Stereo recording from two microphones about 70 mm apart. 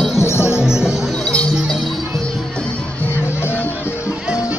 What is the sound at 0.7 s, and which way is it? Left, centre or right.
Music, centre.